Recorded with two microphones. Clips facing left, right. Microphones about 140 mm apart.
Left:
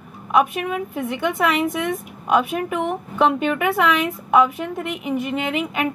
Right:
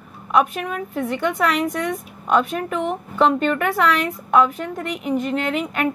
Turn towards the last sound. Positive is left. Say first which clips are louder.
# right 1 dB
turn(degrees=5)  # may be behind; listen again after turning